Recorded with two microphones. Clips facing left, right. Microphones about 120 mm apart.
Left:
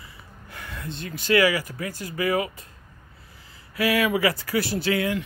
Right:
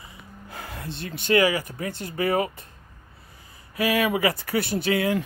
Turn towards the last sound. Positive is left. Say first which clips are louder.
# right 1 dB
turn(degrees=-25)  # may be behind; listen again after turning